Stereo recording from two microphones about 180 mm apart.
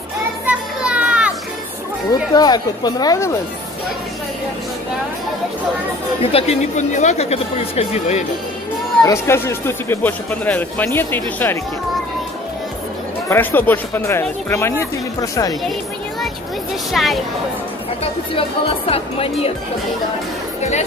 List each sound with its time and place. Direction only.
0.5 s children playing: 5° right (ahead or behind)
2.3 s speech: 20° left (ahead or behind)
6.3 s speech: 35° left (ahead or behind)
9.0 s speech: 15° left (ahead or behind)
13.3 s speech: 10° left (ahead or behind)
16.9 s speech: centre (ahead or behind)
18.0 s speech: 30° left (ahead or behind)